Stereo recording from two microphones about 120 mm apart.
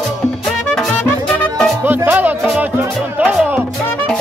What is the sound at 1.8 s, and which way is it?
Music, 15° right (ahead or behind).